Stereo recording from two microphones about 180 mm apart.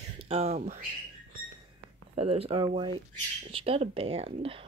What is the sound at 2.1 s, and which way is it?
Speech, 35° right (ahead or behind).